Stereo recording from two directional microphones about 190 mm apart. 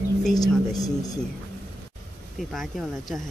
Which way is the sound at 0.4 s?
20° left (ahead or behind).